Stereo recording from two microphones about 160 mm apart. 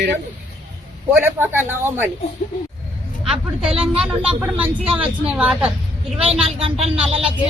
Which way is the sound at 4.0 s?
5° right (ahead or behind).